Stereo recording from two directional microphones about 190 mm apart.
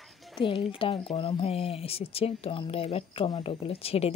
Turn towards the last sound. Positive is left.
turn(degrees=30)  # may be behind; listen again after turning